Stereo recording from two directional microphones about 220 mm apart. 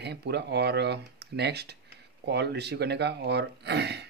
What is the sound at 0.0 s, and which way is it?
Speech, 50° right (ahead or behind).